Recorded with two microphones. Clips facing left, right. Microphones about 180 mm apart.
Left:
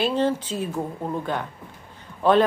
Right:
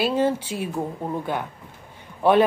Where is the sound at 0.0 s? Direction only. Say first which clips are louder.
Right 1 dB; 10° right (ahead or behind).